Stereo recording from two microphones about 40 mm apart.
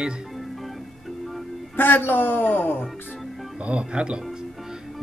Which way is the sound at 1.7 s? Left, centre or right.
Left.